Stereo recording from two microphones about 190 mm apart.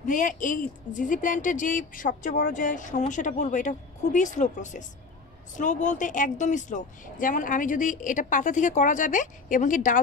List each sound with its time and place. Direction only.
0.0 s speech: 45° left (ahead or behind)